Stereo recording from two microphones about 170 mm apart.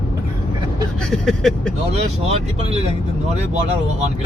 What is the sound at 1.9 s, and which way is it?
Speech, 40° right (ahead or behind).